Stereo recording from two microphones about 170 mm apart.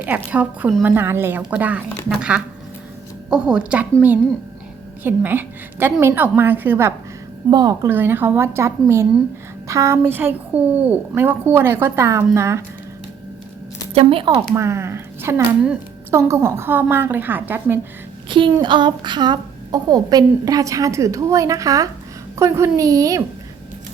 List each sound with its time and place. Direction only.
0.3 s a woman's voice: 10° right (ahead or behind)
5.0 s a woman's voice: 10° right (ahead or behind)
13.9 s speech: 35° right (ahead or behind)
14.5 s a woman's voice: 15° right (ahead or behind)
18.3 s a woman's voice: 30° right (ahead or behind)